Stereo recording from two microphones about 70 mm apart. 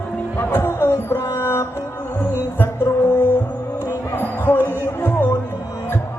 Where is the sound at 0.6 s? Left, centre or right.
Left.